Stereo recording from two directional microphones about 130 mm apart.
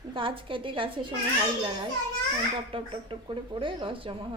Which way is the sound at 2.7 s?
45° right (ahead or behind).